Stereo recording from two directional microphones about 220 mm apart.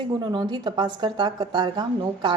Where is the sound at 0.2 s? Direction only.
20° right (ahead or behind).